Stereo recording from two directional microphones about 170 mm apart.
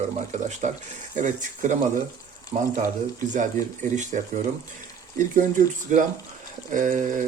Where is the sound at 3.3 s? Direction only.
45° right (ahead or behind).